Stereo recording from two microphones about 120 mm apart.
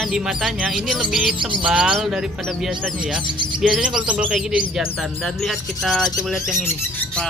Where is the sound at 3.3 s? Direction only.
40° right (ahead or behind).